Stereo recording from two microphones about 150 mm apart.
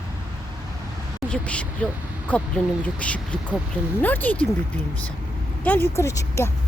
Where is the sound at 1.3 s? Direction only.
10° left (ahead or behind).